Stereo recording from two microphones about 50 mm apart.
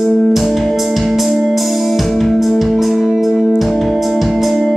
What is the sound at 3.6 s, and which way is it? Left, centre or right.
Organ, centre.